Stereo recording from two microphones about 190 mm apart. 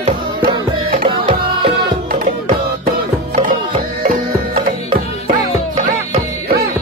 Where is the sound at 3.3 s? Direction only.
40° right (ahead or behind).